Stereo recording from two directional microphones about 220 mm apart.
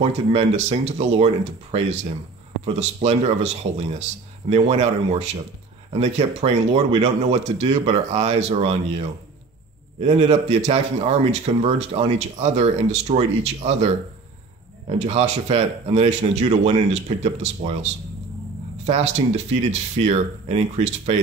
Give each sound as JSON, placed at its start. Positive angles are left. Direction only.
{"t": 0.0, "sound": "a man's voice", "side_deg": -30}
{"t": 18.9, "sound": "speech", "side_deg": -30}